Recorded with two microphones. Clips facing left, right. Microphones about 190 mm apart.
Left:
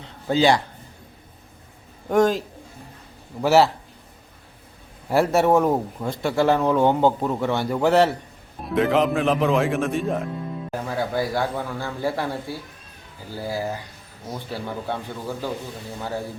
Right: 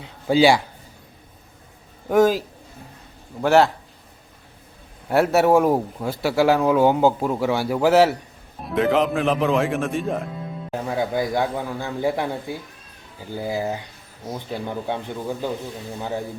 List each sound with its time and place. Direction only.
0.0 s a sound: 10° right (ahead or behind)
2.0 s speech: 5° right (ahead or behind)
3.4 s speech: 5° left (ahead or behind)
5.0 s speech: centre (ahead or behind)
10.7 s speech: 20° right (ahead or behind)